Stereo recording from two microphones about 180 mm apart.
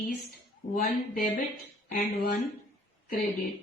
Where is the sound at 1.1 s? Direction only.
45° left (ahead or behind).